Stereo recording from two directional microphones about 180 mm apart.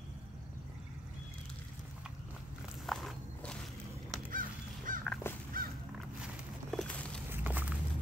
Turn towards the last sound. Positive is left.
turn(degrees=-10)  # may be behind; listen again after turning